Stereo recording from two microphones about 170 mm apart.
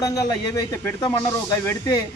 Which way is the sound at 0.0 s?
20° left (ahead or behind).